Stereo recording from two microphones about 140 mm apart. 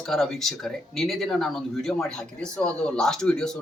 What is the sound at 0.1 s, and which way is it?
Speech, 5° left (ahead or behind).